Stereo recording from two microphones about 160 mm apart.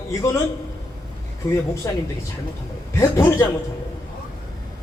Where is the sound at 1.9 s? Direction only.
15° left (ahead or behind).